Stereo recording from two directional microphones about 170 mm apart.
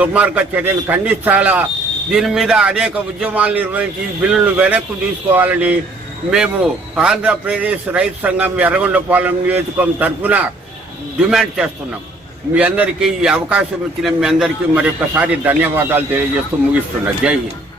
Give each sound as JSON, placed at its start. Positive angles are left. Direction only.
{"t": 0.0, "sound": "a man's voice", "side_deg": -10}